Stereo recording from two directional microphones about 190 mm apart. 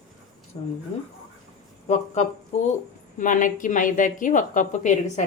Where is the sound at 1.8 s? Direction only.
35° left (ahead or behind).